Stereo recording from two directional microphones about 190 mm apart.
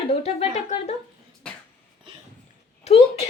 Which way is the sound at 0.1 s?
30° left (ahead or behind).